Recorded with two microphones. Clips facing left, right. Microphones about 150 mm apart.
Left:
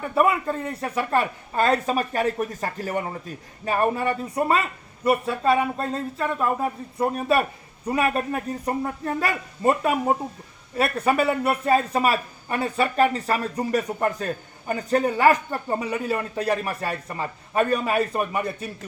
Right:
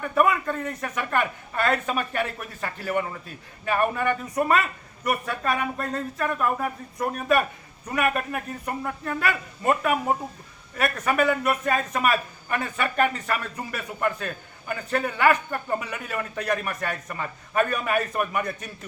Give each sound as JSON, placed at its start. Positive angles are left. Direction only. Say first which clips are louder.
{"t": 0.0, "sound": "speech", "louder": "left 1 dB", "side_deg": 25}